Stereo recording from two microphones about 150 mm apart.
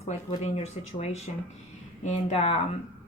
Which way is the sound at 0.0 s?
45° left (ahead or behind).